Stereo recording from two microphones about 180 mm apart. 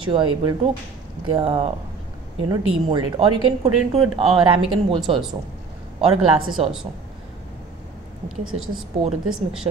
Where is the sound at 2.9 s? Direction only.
25° right (ahead or behind).